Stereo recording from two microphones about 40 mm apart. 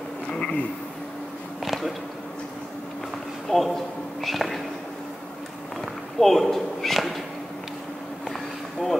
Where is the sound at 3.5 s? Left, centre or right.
Centre.